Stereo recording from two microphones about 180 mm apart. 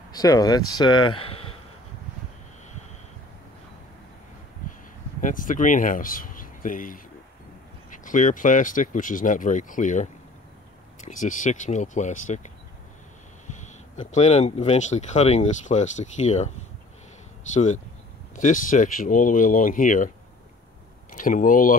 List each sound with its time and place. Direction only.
0.1 s speech: 20° left (ahead or behind)
5.2 s speech: 50° left (ahead or behind)
11.1 s speech: 45° left (ahead or behind)
13.9 s speech: 40° left (ahead or behind)
18.3 s speech: 45° left (ahead or behind)
21.1 s speech: 50° left (ahead or behind)